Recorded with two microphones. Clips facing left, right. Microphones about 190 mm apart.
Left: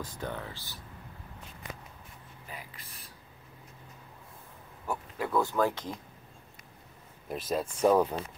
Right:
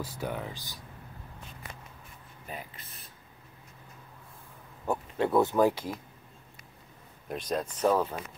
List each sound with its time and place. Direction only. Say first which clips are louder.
0.0 s speech: right 3 dB; 10° right (ahead or behind)
2.4 s a sound: right 5 dB; 25° right (ahead or behind)
4.8 s speech: right 6 dB; 25° right (ahead or behind)
7.2 s speech: even; 5° left (ahead or behind)